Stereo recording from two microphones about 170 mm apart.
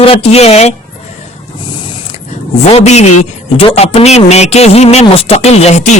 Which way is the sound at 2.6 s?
40° left (ahead or behind).